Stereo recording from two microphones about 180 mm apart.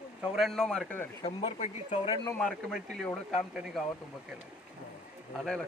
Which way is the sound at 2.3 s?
5° left (ahead or behind).